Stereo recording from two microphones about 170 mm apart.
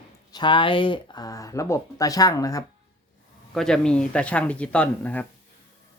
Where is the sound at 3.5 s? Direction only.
5° left (ahead or behind).